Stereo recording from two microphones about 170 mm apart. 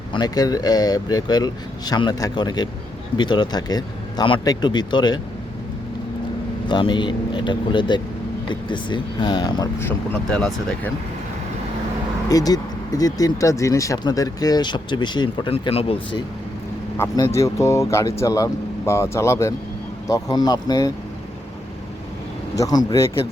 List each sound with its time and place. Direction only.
0.1 s speech: 25° left (ahead or behind)
6.7 s speech: 25° left (ahead or behind)
10.2 s speech: 5° left (ahead or behind)
12.3 s speech: 20° left (ahead or behind)
17.0 s speech: 20° left (ahead or behind)
22.5 s speech: 20° left (ahead or behind)